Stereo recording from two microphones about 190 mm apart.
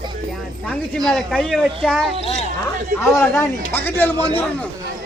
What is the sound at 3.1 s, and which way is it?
A man's voice, 10° left (ahead or behind).